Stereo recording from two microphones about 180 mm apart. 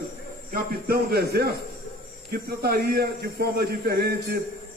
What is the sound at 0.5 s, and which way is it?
A man's voice, 60° right (ahead or behind).